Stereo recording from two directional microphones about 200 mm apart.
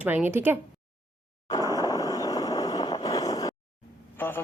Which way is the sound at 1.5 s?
20° left (ahead or behind).